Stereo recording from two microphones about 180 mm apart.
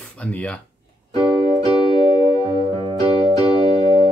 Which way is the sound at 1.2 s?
5° right (ahead or behind).